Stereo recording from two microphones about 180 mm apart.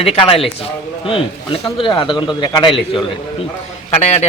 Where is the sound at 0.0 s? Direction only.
30° left (ahead or behind).